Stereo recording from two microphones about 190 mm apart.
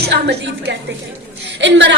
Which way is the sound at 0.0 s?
60° right (ahead or behind).